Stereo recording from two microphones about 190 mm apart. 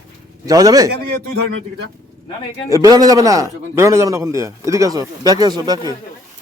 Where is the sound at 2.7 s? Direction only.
15° right (ahead or behind).